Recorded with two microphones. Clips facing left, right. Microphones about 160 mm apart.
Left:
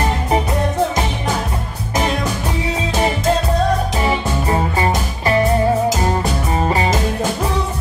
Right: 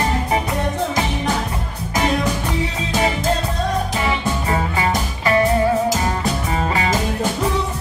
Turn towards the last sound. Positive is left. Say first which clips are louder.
# left 2 dB
turn(degrees=35)  # may be behind; listen again after turning